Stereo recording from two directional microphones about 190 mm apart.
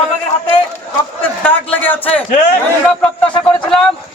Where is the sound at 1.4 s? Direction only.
10° left (ahead or behind).